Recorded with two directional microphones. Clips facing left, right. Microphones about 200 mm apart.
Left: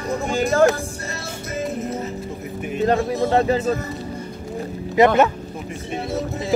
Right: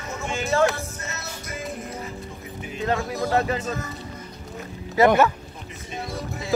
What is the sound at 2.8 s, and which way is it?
Speech, 30° left (ahead or behind).